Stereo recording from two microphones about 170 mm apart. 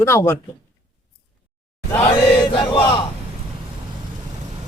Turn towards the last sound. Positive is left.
turn(degrees=30)  # may be behind; listen again after turning